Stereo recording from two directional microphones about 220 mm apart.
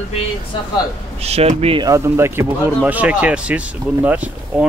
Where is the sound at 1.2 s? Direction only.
30° right (ahead or behind); by 4.6 s 5° right (ahead or behind).